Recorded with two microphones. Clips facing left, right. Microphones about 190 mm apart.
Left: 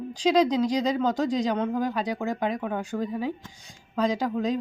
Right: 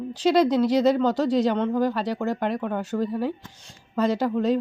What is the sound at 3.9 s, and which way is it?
Speech, 5° right (ahead or behind).